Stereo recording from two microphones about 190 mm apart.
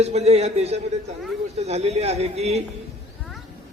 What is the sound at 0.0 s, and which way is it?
A man's voice, 35° right (ahead or behind).